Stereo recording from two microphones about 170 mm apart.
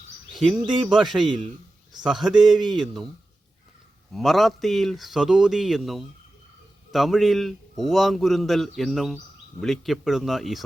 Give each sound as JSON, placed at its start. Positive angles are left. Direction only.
{"t": 0.3, "sound": "speech", "side_deg": -5}
{"t": 1.9, "sound": "a sound", "side_deg": -25}
{"t": 2.4, "sound": "speech", "side_deg": 0}
{"t": 4.1, "sound": "speech", "side_deg": 0}